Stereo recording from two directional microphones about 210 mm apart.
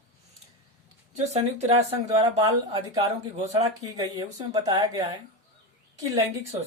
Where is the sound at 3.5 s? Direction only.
20° right (ahead or behind).